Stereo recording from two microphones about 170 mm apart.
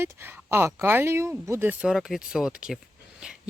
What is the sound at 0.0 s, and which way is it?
Speech, 10° right (ahead or behind).